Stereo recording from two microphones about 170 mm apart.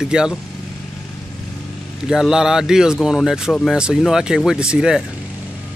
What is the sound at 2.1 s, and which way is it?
Speech, 5° right (ahead or behind).